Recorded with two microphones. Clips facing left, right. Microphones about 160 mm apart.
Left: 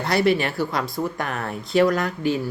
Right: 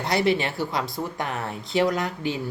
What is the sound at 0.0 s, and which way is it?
Speech, 20° right (ahead or behind).